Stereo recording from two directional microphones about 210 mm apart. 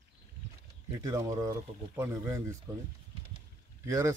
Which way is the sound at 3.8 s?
15° right (ahead or behind).